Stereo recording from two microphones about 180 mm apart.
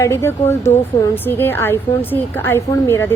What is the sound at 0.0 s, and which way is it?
A woman's voice, 15° left (ahead or behind).